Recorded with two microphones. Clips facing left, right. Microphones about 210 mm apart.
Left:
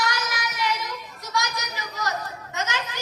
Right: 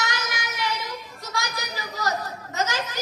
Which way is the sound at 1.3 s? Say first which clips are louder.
Left 2 dB; 30° right (ahead or behind).